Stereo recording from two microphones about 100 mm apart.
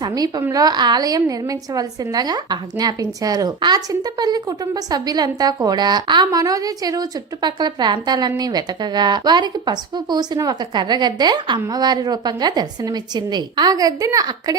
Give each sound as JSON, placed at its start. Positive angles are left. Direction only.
{"t": 0.0, "sound": "a woman's voice", "side_deg": -40}